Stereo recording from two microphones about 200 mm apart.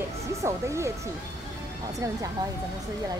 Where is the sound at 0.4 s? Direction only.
15° right (ahead or behind).